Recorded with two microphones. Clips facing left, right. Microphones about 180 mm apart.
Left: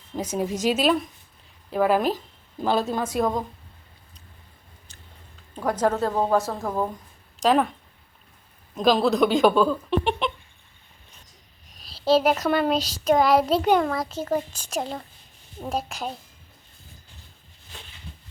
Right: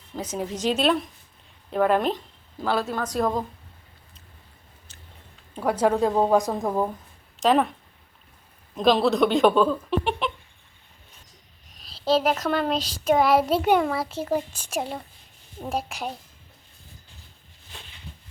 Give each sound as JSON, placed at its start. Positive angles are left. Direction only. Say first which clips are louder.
{"t": 0.2, "sound": "speech", "louder": "left 3 dB", "side_deg": 10}
{"t": 2.6, "sound": "speech", "louder": "left 2 dB", "side_deg": 20}
{"t": 3.0, "sound": "speech", "louder": "left 1 dB", "side_deg": 5}
{"t": 5.5, "sound": "a child's voice", "louder": "right 2 dB", "side_deg": -10}
{"t": 7.3, "sound": "speech", "louder": "even", "side_deg": 0}
{"t": 8.7, "sound": "speech", "louder": "even", "side_deg": 0}
{"t": 11.8, "sound": "a child's voice", "louder": "left 2 dB", "side_deg": 5}